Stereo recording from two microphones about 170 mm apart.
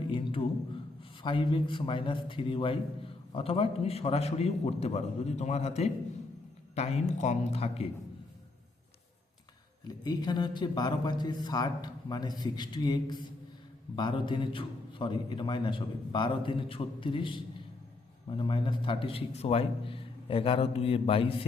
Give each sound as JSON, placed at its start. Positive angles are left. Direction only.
{"t": 0.1, "sound": "a man's voice", "side_deg": 30}
{"t": 9.8, "sound": "a man's voice", "side_deg": 25}